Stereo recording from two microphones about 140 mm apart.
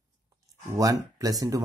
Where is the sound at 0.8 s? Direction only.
25° right (ahead or behind).